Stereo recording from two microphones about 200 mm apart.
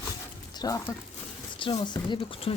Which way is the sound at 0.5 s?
20° left (ahead or behind).